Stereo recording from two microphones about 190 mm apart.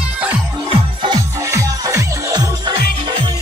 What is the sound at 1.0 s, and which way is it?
Music, 20° right (ahead or behind).